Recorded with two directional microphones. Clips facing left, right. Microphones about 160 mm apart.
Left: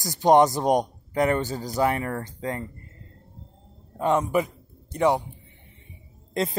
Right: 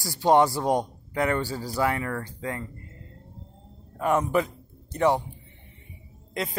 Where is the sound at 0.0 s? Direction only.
20° left (ahead or behind).